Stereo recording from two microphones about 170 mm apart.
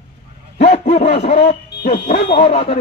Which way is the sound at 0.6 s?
40° left (ahead or behind).